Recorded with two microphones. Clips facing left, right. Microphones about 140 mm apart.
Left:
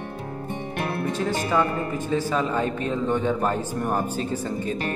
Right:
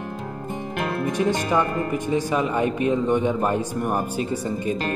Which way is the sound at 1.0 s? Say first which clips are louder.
Right 5 dB; 15° right (ahead or behind).